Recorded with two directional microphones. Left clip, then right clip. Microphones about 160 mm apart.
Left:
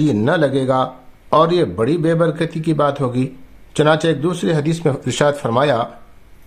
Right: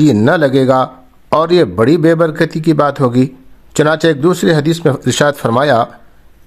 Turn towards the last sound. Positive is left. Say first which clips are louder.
# right 5 dB
turn(degrees=-35)  # may be behind; listen again after turning